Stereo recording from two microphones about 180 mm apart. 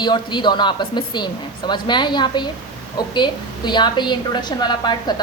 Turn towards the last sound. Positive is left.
turn(degrees=25)  # may be behind; listen again after turning